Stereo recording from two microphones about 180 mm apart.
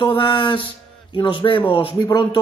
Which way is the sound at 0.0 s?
25° left (ahead or behind).